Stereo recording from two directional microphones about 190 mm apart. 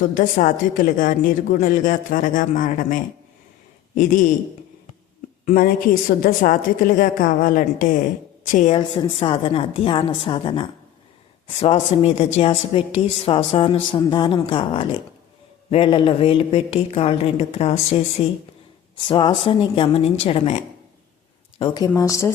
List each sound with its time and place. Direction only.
0.1 s a woman's voice: 45° left (ahead or behind)
5.5 s a woman's voice: 50° left (ahead or behind)
8.9 s a woman's voice: 25° left (ahead or behind)
21.6 s a woman's voice: 25° left (ahead or behind)